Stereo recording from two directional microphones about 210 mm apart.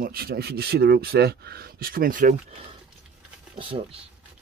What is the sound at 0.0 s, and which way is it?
Speech, 45° right (ahead or behind).